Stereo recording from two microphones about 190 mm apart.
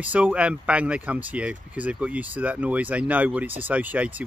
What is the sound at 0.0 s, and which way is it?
Speech, 5° right (ahead or behind).